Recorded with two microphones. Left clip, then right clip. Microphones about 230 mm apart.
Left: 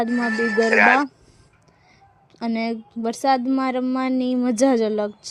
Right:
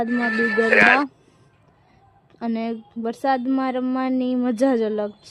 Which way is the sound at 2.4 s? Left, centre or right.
Left.